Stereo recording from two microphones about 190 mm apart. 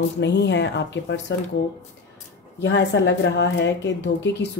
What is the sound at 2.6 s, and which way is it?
Speech, 70° left (ahead or behind).